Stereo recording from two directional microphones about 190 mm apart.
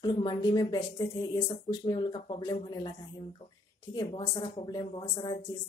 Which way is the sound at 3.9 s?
25° left (ahead or behind).